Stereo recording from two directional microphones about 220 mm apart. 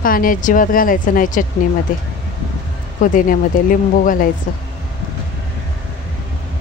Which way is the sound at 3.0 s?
35° left (ahead or behind).